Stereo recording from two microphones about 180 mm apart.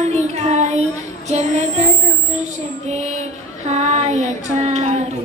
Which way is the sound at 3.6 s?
40° right (ahead or behind).